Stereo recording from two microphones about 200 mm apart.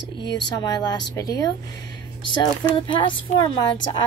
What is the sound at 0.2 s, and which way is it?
Speech, 20° left (ahead or behind).